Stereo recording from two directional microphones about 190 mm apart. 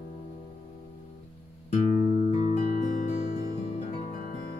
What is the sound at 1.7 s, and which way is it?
Music, 35° left (ahead or behind).